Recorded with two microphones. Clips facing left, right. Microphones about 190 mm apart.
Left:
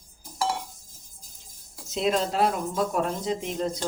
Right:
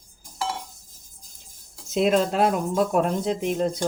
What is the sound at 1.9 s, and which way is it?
Speech, 55° right (ahead or behind).